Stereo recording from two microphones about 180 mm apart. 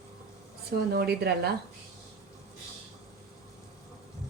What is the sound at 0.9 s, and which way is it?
Speech, 60° right (ahead or behind).